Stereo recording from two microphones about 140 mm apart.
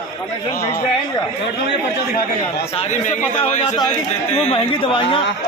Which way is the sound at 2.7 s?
45° left (ahead or behind).